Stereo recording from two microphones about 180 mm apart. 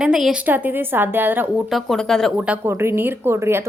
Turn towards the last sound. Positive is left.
turn(degrees=-15)  # may be behind; listen again after turning